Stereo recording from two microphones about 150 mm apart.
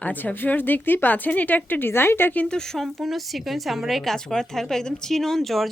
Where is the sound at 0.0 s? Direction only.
10° left (ahead or behind).